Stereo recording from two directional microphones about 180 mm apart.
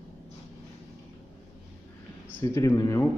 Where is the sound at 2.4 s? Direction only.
15° left (ahead or behind).